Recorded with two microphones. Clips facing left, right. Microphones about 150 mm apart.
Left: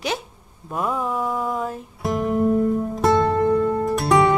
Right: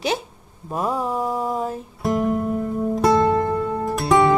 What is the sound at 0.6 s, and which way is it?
Mantra, 30° right (ahead or behind).